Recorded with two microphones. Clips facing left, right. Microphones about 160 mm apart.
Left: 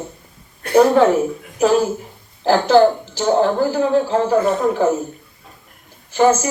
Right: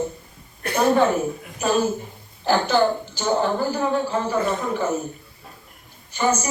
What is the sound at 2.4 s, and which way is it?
A woman's voice, 90° left.